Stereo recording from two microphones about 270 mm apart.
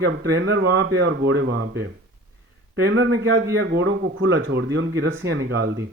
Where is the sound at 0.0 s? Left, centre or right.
Right.